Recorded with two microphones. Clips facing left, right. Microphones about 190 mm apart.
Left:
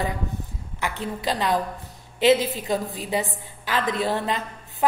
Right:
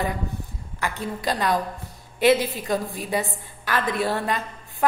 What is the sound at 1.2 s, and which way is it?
A woman's voice, 15° left (ahead or behind).